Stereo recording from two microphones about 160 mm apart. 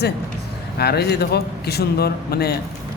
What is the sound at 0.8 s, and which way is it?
A man's voice, 90° left.